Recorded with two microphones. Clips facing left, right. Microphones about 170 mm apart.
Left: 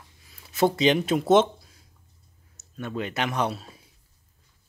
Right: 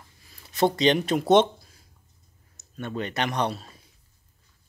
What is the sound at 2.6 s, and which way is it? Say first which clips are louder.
Speech: even; 5° left (ahead or behind).